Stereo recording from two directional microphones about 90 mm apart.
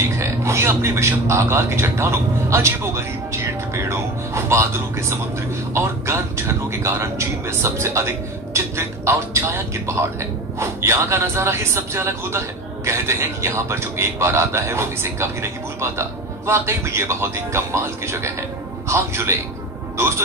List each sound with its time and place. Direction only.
0.2 s a man's voice: 30° right (ahead or behind)